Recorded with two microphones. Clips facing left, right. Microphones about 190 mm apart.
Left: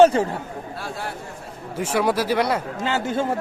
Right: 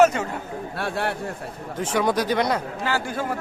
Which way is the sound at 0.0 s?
30° left (ahead or behind).